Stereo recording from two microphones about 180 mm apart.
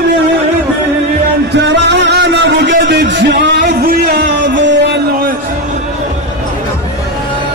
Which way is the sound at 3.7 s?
60° right (ahead or behind).